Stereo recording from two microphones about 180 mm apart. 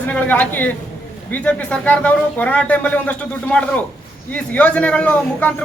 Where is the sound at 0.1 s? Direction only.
10° left (ahead or behind).